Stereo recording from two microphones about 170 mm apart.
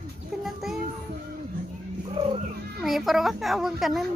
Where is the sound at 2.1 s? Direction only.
35° right (ahead or behind).